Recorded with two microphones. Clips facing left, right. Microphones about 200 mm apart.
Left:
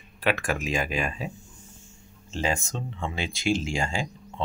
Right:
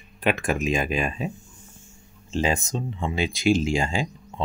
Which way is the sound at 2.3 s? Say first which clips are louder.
Right 4 dB; 15° right (ahead or behind).